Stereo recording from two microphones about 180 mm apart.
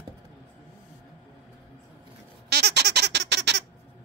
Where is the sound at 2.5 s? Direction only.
65° right (ahead or behind).